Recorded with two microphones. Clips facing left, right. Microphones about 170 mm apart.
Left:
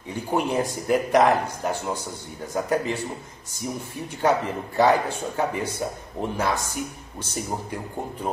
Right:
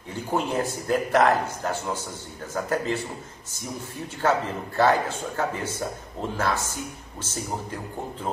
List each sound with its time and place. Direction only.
0.1 s a man's voice: 15° left (ahead or behind)
4.2 s a man's voice: 15° left (ahead or behind)